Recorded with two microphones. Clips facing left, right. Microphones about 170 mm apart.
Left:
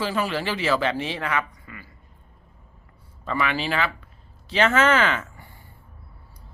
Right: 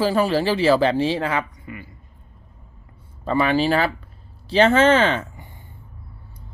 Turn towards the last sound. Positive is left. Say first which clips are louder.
# right 4 dB
turn(degrees=-30)  # may be behind; listen again after turning